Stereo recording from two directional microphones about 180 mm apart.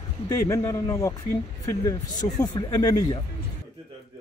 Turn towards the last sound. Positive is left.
turn(degrees=20)  # may be behind; listen again after turning